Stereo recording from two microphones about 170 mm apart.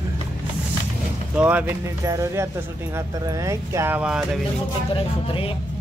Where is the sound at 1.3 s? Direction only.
10° right (ahead or behind).